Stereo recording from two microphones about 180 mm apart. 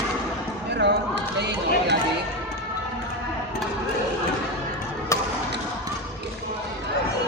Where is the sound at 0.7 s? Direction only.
75° right (ahead or behind).